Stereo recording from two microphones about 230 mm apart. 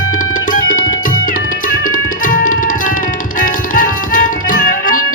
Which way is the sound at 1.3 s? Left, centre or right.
Left.